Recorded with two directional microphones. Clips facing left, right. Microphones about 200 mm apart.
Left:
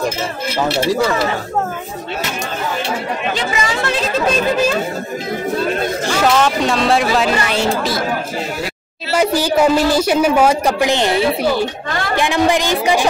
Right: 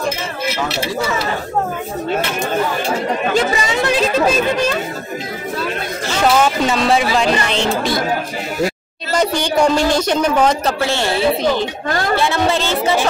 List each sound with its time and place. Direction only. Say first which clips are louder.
3.6 s speech: right 2 dB; 20° right (ahead or behind)
6.2 s speech: right 1 dB; 5° right (ahead or behind)
9.1 s speech: left 2 dB; 5° left (ahead or behind)